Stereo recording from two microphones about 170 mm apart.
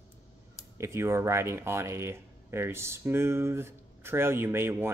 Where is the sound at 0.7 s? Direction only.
15° right (ahead or behind).